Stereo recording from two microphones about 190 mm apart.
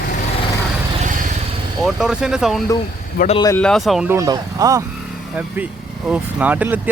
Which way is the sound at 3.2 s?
45° left (ahead or behind).